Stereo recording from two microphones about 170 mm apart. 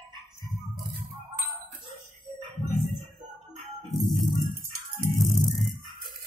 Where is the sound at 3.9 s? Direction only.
Centre (ahead or behind).